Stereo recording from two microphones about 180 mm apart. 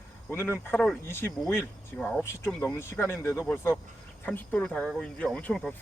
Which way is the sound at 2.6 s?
15° left (ahead or behind).